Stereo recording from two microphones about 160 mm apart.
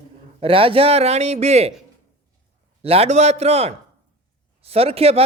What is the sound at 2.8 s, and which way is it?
A man's voice, 40° right (ahead or behind).